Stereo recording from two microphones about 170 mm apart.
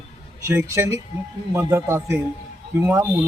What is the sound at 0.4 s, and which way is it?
A man's voice, 15° right (ahead or behind).